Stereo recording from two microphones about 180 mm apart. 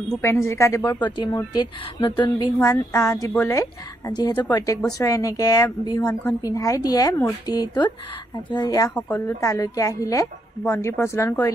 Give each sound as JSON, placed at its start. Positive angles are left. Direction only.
{"t": 0.1, "sound": "a woman's voice", "side_deg": 15}
{"t": 8.9, "sound": "a woman's voice", "side_deg": 10}